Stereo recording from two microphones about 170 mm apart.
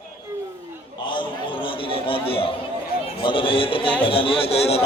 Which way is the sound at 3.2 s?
30° left (ahead or behind).